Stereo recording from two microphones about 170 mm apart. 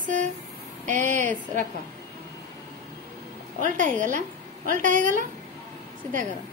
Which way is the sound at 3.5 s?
50° right (ahead or behind).